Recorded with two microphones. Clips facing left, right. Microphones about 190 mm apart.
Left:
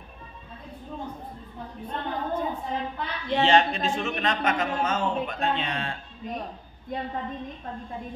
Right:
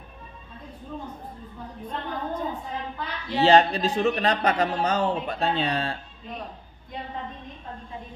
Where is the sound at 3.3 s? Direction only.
35° right (ahead or behind).